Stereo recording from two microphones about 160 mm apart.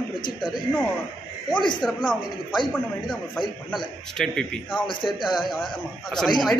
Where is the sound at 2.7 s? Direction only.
10° left (ahead or behind).